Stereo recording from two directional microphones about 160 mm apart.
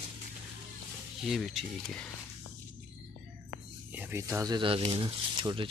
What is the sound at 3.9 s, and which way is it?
Speech, 10° right (ahead or behind).